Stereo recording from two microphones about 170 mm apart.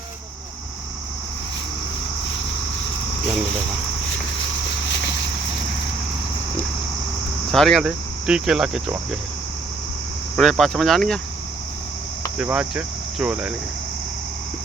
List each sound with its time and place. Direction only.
4.9 s vehicle: 90° left
7.5 s speech: centre (ahead or behind)
10.3 s speech: centre (ahead or behind)
12.4 s speech: 5° right (ahead or behind)